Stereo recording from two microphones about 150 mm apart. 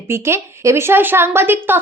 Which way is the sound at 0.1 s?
15° right (ahead or behind).